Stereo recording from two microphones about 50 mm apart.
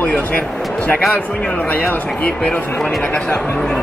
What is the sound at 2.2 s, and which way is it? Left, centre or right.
Speech, left.